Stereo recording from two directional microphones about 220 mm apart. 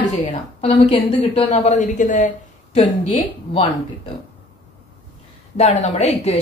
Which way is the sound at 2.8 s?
20° left (ahead or behind).